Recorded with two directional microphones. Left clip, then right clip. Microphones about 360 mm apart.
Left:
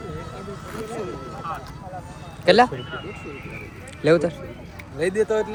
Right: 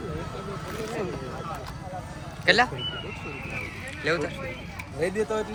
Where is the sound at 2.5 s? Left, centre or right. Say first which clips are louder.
Left 5 dB; centre.